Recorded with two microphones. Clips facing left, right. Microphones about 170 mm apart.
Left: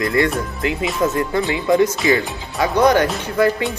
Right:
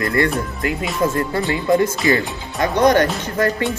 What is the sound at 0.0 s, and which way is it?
Speech, 20° left (ahead or behind).